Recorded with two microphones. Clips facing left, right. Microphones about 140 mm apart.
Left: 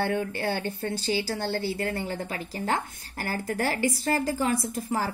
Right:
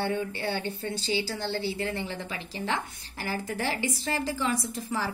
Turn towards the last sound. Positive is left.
turn(degrees=45)  # may be behind; listen again after turning